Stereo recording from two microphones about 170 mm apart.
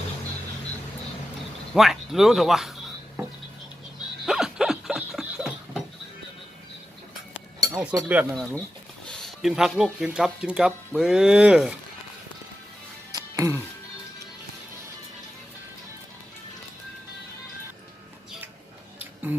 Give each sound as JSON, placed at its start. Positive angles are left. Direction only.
{"t": 1.7, "sound": "speech", "side_deg": 0}
{"t": 4.3, "sound": "laughter", "side_deg": -5}
{"t": 7.7, "sound": "speech", "side_deg": -5}
{"t": 13.1, "sound": "music", "side_deg": -20}
{"t": 18.9, "sound": "a sound", "side_deg": -10}